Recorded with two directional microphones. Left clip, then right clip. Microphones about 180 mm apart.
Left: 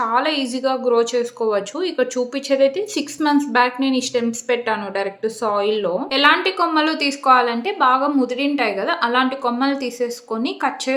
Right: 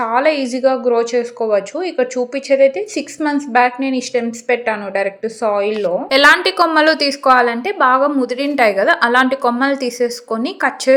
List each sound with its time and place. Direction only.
0.0 s a woman's voice: 20° right (ahead or behind)
6.1 s a woman's voice: 35° right (ahead or behind)